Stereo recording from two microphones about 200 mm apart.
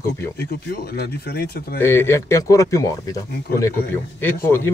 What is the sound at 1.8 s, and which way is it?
Speech, 10° left (ahead or behind).